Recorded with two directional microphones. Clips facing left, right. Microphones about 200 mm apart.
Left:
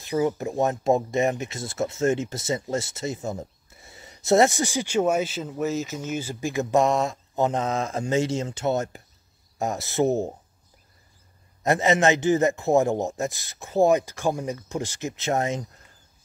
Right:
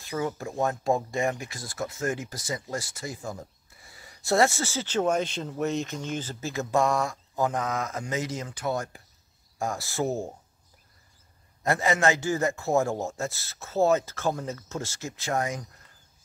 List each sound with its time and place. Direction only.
0.0 s speech: 20° left (ahead or behind)
11.6 s speech: 20° left (ahead or behind)